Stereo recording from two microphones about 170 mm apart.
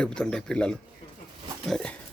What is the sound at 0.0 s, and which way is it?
Speech, 5° left (ahead or behind).